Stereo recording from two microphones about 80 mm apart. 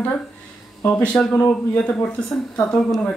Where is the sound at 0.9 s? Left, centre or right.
Centre.